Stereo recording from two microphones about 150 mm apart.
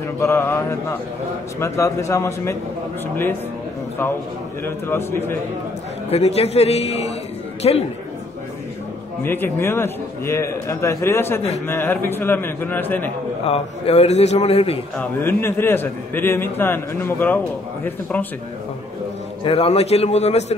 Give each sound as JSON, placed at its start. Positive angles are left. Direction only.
{"t": 0.2, "sound": "a man's voice", "side_deg": 15}
{"t": 4.6, "sound": "a man's voice", "side_deg": 15}
{"t": 6.0, "sound": "a man's voice", "side_deg": 45}
{"t": 9.2, "sound": "a man's voice", "side_deg": 15}
{"t": 13.5, "sound": "a man's voice", "side_deg": 45}
{"t": 15.0, "sound": "a man's voice", "side_deg": 15}
{"t": 19.4, "sound": "a man's voice", "side_deg": 40}